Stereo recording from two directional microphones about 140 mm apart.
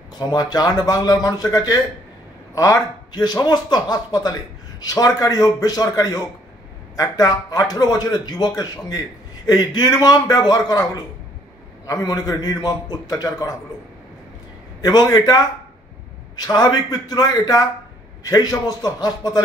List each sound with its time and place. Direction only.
0.3 s a man's voice: 30° left (ahead or behind)
14.8 s a man's voice: 30° left (ahead or behind)
16.5 s a man's voice: 30° left (ahead or behind)